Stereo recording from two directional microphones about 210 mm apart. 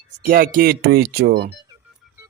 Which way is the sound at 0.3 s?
40° right (ahead or behind).